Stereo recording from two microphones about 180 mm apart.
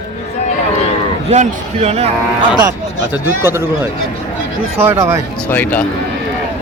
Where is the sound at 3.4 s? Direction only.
15° right (ahead or behind).